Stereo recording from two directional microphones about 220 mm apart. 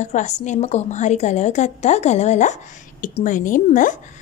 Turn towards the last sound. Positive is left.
turn(degrees=35)  # may be behind; listen again after turning